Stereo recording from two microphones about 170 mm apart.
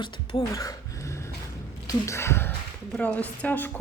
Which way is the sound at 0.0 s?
25° left (ahead or behind).